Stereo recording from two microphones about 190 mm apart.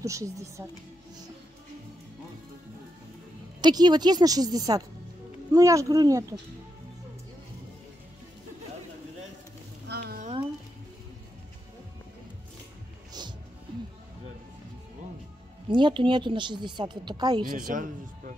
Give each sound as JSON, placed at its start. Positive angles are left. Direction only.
{"t": 0.0, "sound": "speech", "side_deg": -15}
{"t": 3.6, "sound": "speech", "side_deg": -20}
{"t": 9.8, "sound": "a sound", "side_deg": -55}
{"t": 15.7, "sound": "speech", "side_deg": -25}
{"t": 17.5, "sound": "speech", "side_deg": -45}